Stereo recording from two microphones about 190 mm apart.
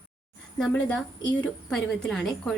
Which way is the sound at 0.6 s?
5° left (ahead or behind).